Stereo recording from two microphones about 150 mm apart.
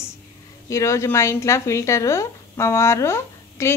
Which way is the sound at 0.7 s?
20° left (ahead or behind).